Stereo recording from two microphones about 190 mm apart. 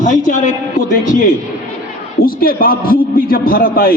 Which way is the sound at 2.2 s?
50° left (ahead or behind).